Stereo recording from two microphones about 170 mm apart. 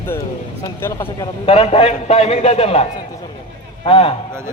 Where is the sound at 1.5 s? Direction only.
35° left (ahead or behind).